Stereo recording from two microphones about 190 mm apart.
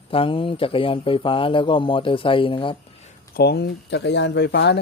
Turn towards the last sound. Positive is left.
turn(degrees=60)  # may be behind; listen again after turning